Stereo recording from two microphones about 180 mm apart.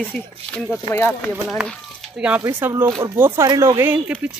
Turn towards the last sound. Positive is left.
turn(degrees=-10)  # may be behind; listen again after turning